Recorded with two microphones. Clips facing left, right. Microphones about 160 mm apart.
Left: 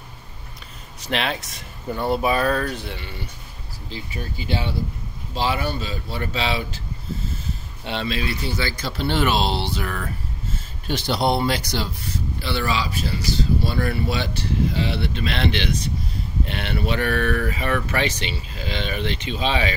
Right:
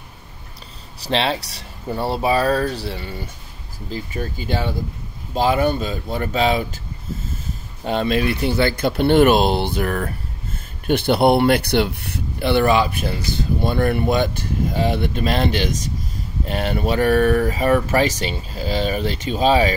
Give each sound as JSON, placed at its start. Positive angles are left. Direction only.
{"t": 1.0, "sound": "speech", "side_deg": -30}
{"t": 7.8, "sound": "speech", "side_deg": -45}